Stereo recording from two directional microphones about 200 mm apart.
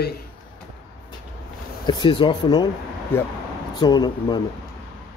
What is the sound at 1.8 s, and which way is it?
Speech, 20° left (ahead or behind).